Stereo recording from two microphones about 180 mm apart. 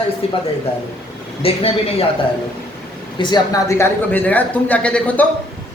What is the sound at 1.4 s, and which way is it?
Speech, 30° left (ahead or behind).